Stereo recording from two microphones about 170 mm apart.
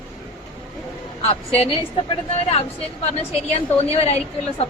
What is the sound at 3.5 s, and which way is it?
Speech, 35° left (ahead or behind).